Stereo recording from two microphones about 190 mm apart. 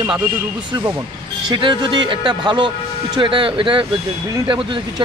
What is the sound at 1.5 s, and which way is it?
Speech, 25° right (ahead or behind).